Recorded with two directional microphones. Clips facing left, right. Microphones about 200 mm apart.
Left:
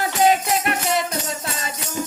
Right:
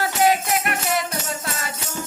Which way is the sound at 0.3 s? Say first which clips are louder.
Left 2 dB; 25° left (ahead or behind).